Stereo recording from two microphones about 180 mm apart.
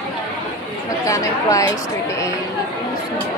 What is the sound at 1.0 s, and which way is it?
Speech, 20° left (ahead or behind).